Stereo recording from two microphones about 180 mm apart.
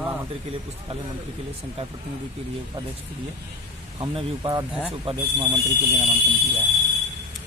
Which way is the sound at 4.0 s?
25° right (ahead or behind).